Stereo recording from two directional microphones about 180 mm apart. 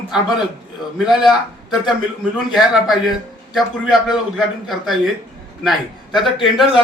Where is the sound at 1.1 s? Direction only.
Centre (ahead or behind).